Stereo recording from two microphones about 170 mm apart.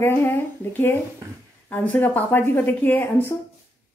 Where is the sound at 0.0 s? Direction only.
15° left (ahead or behind).